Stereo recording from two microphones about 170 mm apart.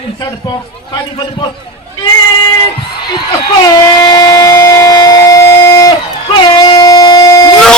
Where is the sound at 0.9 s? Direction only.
25° left (ahead or behind).